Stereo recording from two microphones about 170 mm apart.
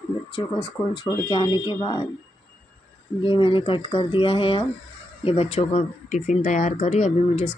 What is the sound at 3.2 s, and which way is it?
Speech, 30° left (ahead or behind).